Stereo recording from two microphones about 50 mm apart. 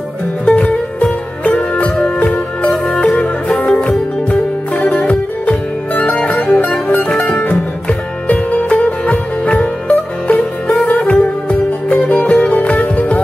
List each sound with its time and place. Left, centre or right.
0.5 s music: left